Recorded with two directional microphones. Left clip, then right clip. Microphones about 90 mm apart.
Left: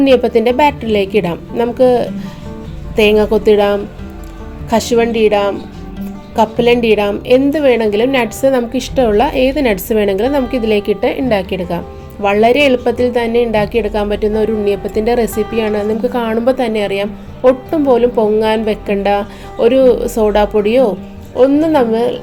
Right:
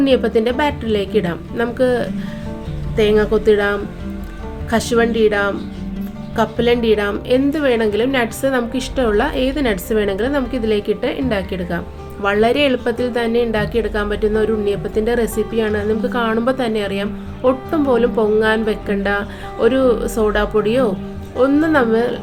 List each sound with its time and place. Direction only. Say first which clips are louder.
0.0 s a woman's voice: left 5 dB; 40° left (ahead or behind)
2.9 s a woman's voice: left 4 dB; 55° left (ahead or behind); by 22.2 s 30° left (ahead or behind)